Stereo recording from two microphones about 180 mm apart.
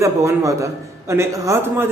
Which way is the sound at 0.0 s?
15° right (ahead or behind).